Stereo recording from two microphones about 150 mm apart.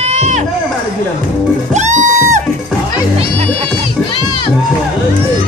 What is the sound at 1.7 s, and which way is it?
Music, 50° right (ahead or behind).